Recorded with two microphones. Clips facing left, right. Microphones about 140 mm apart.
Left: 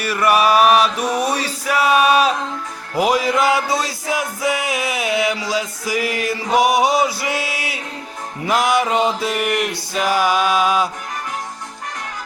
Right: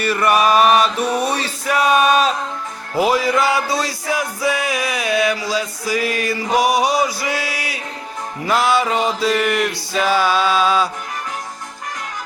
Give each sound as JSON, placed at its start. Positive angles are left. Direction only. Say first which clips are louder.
{"t": 0.0, "sound": "male singing", "louder": "even", "side_deg": 10}
{"t": 2.9, "sound": "music", "louder": "right 1 dB", "side_deg": 15}